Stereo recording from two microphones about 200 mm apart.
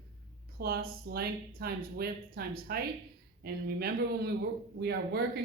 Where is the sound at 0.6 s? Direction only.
50° right (ahead or behind).